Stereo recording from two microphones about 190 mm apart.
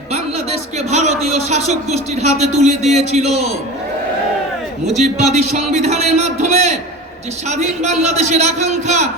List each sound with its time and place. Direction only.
0.9 s a man's voice: 35° right (ahead or behind)
5.0 s a man's voice: 35° right (ahead or behind)